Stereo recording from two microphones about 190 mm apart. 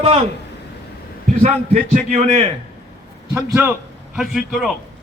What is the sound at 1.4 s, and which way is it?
A man's voice, 40° right (ahead or behind).